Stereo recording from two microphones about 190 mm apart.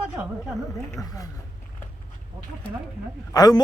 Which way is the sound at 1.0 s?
20° left (ahead or behind).